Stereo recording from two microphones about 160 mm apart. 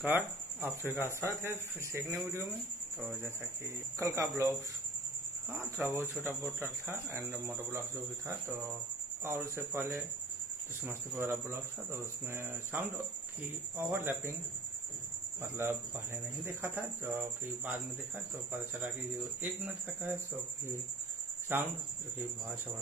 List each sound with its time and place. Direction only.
0.0 s speech: 10° right (ahead or behind)
4.0 s speech: 15° right (ahead or behind)
5.6 s speech: 15° right (ahead or behind)
9.2 s speech: 15° right (ahead or behind)
16.4 s speech: 15° right (ahead or behind)
19.4 s speech: 10° right (ahead or behind)
21.5 s speech: 10° right (ahead or behind)